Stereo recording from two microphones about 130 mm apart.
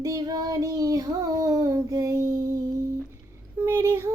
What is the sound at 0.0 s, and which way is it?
Child singing, 30° right (ahead or behind).